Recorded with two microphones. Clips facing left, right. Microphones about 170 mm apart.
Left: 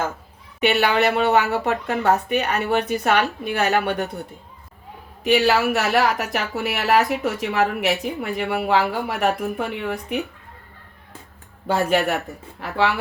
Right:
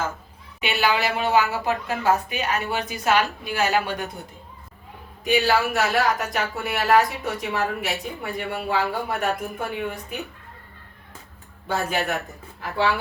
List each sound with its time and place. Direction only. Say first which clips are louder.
0.6 s speech: left 5 dB; 60° left (ahead or behind)
5.2 s speech: left 3 dB; 70° left (ahead or behind)
11.7 s speech: left 5 dB; 65° left (ahead or behind)